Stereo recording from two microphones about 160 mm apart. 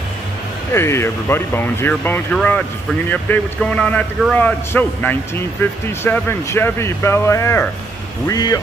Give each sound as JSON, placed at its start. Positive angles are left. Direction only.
{"t": 0.7, "sound": "a man's voice", "side_deg": 15}